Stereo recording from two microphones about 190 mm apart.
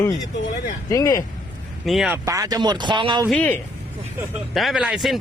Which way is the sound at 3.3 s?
10° left (ahead or behind).